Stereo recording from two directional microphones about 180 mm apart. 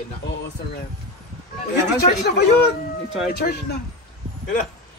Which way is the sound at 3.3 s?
60° left (ahead or behind).